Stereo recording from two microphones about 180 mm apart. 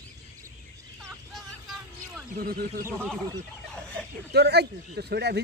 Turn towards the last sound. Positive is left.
turn(degrees=-65)  # may be behind; listen again after turning